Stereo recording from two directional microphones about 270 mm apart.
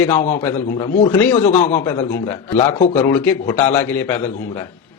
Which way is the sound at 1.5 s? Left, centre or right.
Left.